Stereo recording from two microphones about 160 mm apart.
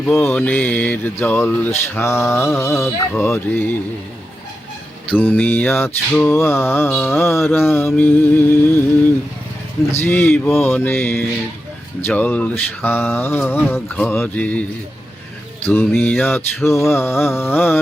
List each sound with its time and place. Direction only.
0.0 s mantra: 15° left (ahead or behind)
5.1 s mantra: 10° left (ahead or behind)
9.9 s mantra: 15° left (ahead or behind)
15.6 s mantra: 15° left (ahead or behind)